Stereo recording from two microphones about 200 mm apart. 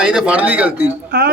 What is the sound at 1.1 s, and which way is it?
Speech, 55° right (ahead or behind).